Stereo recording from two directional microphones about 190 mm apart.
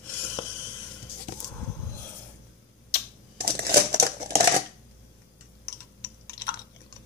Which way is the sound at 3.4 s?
55° right (ahead or behind).